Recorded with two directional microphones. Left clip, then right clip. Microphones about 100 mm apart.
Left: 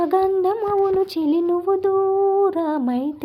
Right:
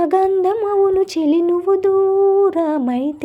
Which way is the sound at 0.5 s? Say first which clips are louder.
Right 4 dB; 20° right (ahead or behind).